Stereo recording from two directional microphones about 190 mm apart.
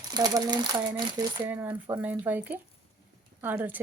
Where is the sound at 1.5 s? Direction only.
10° right (ahead or behind).